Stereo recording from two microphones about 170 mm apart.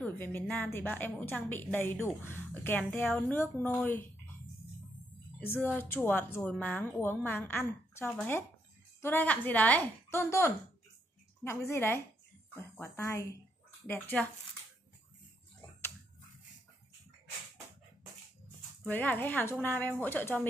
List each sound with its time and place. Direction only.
0.0 s a woman's voice: 10° left (ahead or behind)
5.4 s a woman's voice: 10° left (ahead or behind)
18.9 s a woman's voice: 10° left (ahead or behind)